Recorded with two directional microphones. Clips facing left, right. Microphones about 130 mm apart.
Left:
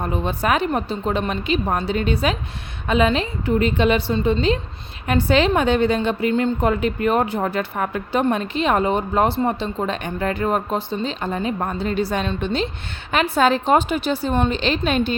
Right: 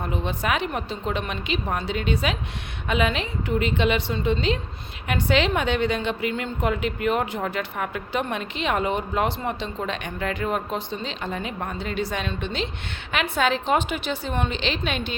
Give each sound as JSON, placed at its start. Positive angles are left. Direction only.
{"t": 0.1, "sound": "a woman's voice", "side_deg": 40}